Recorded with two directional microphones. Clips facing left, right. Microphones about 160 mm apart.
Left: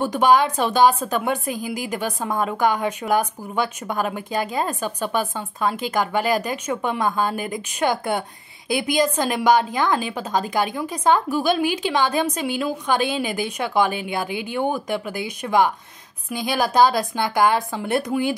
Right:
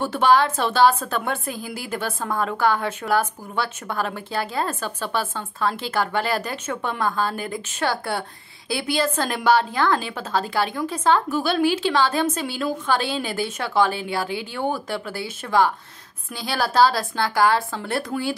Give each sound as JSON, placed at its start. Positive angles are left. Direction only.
{"t": 0.0, "sound": "a woman's voice", "side_deg": 15}